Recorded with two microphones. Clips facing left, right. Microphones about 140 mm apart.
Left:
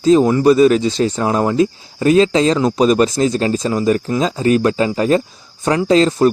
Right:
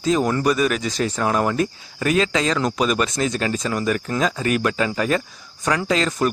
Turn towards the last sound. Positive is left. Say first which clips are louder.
# left 8 dB
turn(degrees=30)  # may be behind; listen again after turning